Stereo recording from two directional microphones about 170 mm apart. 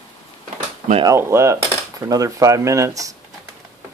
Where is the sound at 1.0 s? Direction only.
15° right (ahead or behind).